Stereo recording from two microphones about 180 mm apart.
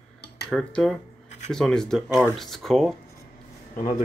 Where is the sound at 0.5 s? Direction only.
Centre (ahead or behind).